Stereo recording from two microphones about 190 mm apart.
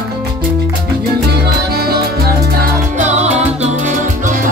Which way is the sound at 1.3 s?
55° right (ahead or behind).